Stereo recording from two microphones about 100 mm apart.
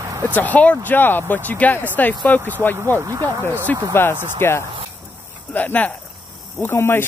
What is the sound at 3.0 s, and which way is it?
Speech, 35° right (ahead or behind).